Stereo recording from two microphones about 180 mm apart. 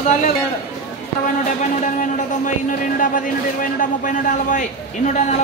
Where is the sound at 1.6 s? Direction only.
45° left (ahead or behind).